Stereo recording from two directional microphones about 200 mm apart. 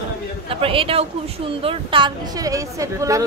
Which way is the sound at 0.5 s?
25° right (ahead or behind).